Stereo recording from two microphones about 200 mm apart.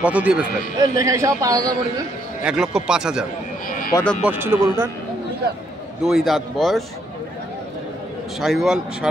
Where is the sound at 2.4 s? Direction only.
5° right (ahead or behind).